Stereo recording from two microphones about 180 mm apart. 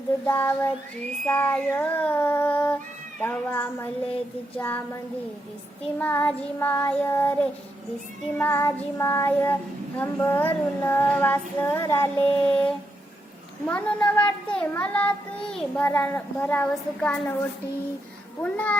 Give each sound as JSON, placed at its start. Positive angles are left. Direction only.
{"t": 0.3, "sound": "a child's voice", "side_deg": 10}
{"t": 6.0, "sound": "a child's voice", "side_deg": 10}
{"t": 8.4, "sound": "a child's voice", "side_deg": 10}